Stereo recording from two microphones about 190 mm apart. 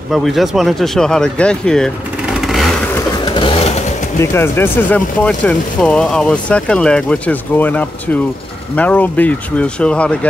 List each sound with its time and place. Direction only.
0.1 s speech: centre (ahead or behind)
3.3 s a sound: 30° left (ahead or behind)
4.2 s speech: 15° left (ahead or behind)